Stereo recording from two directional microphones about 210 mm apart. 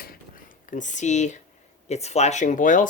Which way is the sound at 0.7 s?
35° left (ahead or behind).